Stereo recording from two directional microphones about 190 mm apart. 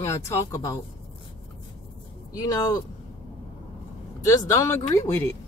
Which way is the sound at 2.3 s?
20° left (ahead or behind).